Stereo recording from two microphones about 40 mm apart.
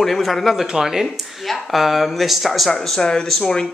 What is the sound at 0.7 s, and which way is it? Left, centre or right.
Speech, centre.